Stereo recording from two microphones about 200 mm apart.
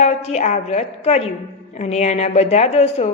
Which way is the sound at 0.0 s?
30° left (ahead or behind).